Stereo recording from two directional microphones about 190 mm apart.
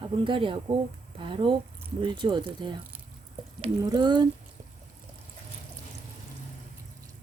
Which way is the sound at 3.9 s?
20° right (ahead or behind).